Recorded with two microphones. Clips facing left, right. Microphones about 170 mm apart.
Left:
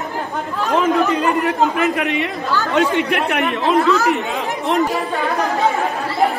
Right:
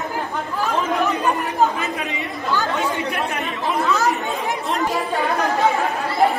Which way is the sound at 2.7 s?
90° left.